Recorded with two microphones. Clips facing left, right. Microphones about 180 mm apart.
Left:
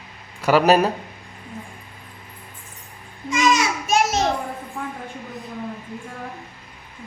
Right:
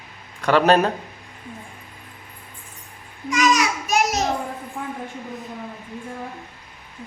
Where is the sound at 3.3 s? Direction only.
25° left (ahead or behind).